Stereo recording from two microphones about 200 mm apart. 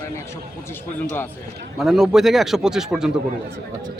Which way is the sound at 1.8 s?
Centre (ahead or behind).